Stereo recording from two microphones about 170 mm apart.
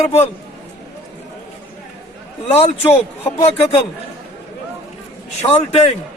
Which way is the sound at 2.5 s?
35° left (ahead or behind).